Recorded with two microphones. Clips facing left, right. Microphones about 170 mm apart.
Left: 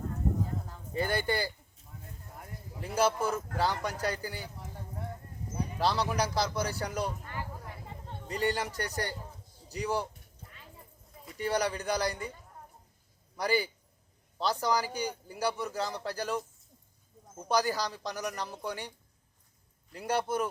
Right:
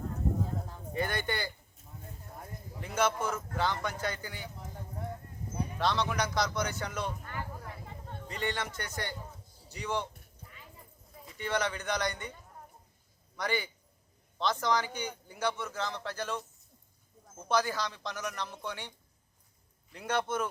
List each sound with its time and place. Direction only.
0.9 s speech: 30° left (ahead or behind)
2.8 s speech: 35° left (ahead or behind)
5.8 s speech: 35° left (ahead or behind)
7.3 s a sound: centre (ahead or behind)
8.3 s speech: 35° left (ahead or behind)
11.3 s speech: 35° left (ahead or behind)
13.3 s speech: 35° left (ahead or behind)
17.5 s speech: 35° left (ahead or behind)